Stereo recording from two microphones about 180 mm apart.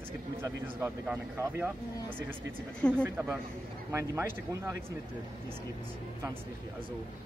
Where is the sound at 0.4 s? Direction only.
15° right (ahead or behind).